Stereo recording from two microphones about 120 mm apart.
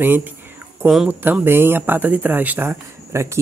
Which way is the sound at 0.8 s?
5° right (ahead or behind).